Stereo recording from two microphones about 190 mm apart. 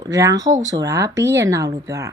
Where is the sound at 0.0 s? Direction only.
15° right (ahead or behind).